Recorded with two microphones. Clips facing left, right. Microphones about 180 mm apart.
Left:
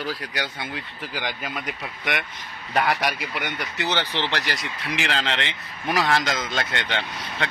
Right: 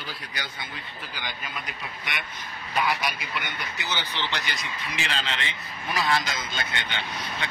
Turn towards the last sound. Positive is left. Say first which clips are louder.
# left 4 dB
turn(degrees=75)  # may be behind; listen again after turning